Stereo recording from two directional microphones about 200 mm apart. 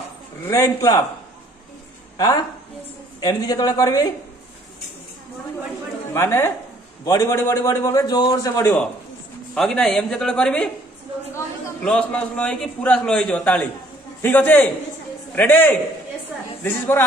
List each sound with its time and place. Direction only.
0.5 s a man's voice: 15° left (ahead or behind)
3.2 s a man's voice: 20° left (ahead or behind)
6.1 s a man's voice: 10° left (ahead or behind)